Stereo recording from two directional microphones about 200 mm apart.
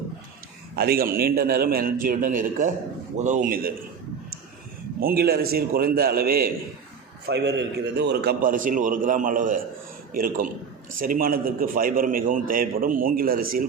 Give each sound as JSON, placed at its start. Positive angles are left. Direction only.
{"t": 0.8, "sound": "a man's voice", "side_deg": -50}
{"t": 4.9, "sound": "a man's voice", "side_deg": -50}